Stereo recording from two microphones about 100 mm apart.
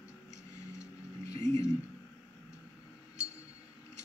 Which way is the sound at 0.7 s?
35° left (ahead or behind).